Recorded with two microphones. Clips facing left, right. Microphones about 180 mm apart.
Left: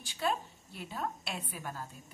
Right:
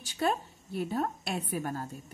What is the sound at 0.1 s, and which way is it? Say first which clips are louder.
A woman's voice: right 4 dB; 45° right (ahead or behind).